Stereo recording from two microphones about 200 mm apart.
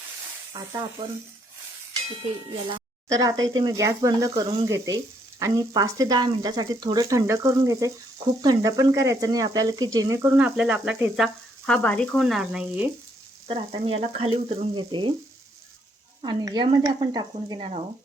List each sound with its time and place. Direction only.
0.5 s speech: 20° right (ahead or behind)
2.6 s speech: 20° right (ahead or behind)
13.5 s speech: 30° right (ahead or behind)
16.2 s speech: 20° right (ahead or behind)
17.6 s speech: 30° right (ahead or behind)